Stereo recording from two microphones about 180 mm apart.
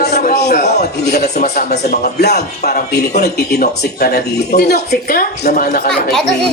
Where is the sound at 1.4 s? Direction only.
40° left (ahead or behind).